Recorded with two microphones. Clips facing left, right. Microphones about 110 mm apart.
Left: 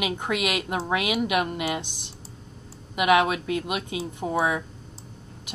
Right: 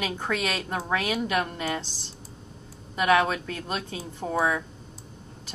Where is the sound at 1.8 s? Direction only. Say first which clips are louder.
Left 2 dB; 65° left (ahead or behind).